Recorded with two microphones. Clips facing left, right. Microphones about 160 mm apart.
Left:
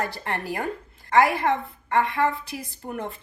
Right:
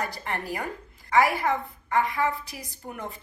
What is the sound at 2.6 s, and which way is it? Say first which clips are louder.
Speech: left 5 dB; 45° left (ahead or behind).